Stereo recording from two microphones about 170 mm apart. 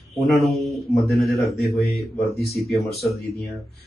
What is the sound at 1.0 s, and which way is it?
Speech, 65° left (ahead or behind).